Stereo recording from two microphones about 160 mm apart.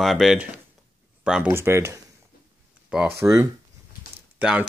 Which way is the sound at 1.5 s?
15° right (ahead or behind).